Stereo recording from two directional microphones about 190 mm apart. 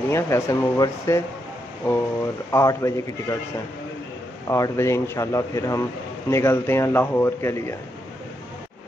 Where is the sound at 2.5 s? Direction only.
15° left (ahead or behind).